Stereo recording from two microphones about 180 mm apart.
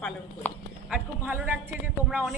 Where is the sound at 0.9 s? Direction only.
10° right (ahead or behind).